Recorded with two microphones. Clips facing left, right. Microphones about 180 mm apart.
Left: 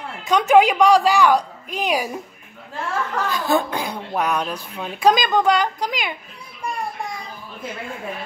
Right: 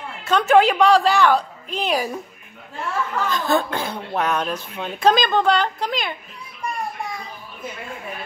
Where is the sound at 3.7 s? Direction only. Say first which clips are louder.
Even; 15° left (ahead or behind).